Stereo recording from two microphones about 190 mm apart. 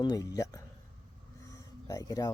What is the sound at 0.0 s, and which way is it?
Speech, 20° left (ahead or behind).